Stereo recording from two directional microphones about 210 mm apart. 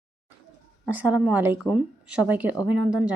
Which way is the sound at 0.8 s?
10° right (ahead or behind).